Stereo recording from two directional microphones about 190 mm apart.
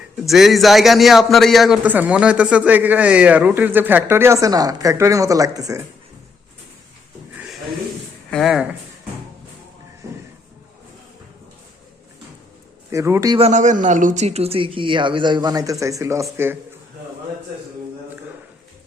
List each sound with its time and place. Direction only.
0.3 s a man's voice: centre (ahead or behind); by 5.8 s 20° right (ahead or behind)
8.3 s speech: centre (ahead or behind)
12.9 s a man's voice: 15° right (ahead or behind)
13.4 s speech: 40° right (ahead or behind); by 16.6 s 15° right (ahead or behind)